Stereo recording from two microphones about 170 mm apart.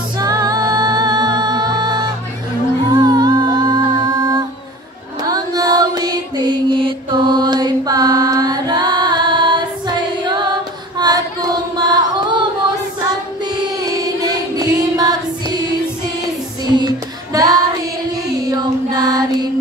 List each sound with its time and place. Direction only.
0.2 s music: 20° right (ahead or behind)
2.9 s humming: 25° right (ahead or behind)
5.2 s mantra: 20° right (ahead or behind)
11.0 s a sound: 25° right (ahead or behind)
13.7 s music: 20° right (ahead or behind)
16.6 s music: 25° right (ahead or behind)